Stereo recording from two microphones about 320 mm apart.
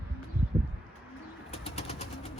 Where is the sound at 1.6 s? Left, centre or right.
Centre.